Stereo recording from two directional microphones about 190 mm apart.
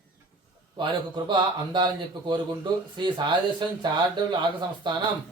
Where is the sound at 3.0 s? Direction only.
25° right (ahead or behind).